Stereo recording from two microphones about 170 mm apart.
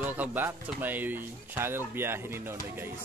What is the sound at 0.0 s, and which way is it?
Speech, 10° right (ahead or behind).